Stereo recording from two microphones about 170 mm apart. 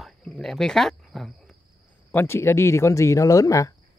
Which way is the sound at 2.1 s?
15° left (ahead or behind).